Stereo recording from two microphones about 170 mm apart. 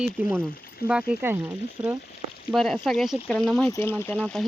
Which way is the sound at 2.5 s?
Centre (ahead or behind).